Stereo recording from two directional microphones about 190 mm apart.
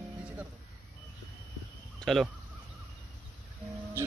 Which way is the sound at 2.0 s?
Centre (ahead or behind).